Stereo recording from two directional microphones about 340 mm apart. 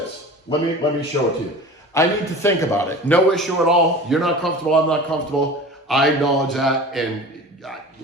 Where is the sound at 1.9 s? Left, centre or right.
Centre.